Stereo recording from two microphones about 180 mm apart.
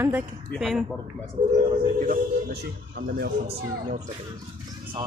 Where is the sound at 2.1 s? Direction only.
55° right (ahead or behind).